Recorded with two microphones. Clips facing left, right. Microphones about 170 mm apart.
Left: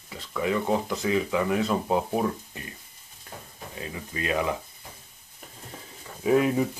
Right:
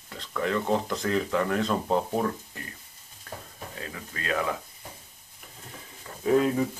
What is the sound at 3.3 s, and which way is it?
Stir, 15° left (ahead or behind).